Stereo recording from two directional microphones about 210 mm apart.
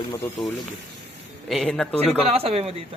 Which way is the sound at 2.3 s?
30° right (ahead or behind).